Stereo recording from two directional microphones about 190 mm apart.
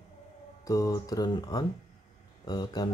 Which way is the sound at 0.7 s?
20° left (ahead or behind).